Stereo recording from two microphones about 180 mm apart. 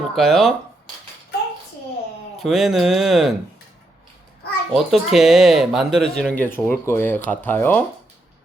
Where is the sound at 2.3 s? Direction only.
Centre (ahead or behind).